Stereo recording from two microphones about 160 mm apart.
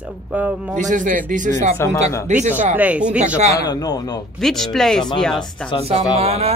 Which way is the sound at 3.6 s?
25° left (ahead or behind).